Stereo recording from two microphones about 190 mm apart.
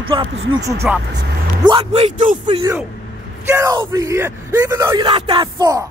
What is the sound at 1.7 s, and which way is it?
Speech, 30° right (ahead or behind).